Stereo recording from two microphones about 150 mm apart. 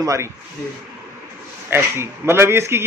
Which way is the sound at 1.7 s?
15° right (ahead or behind).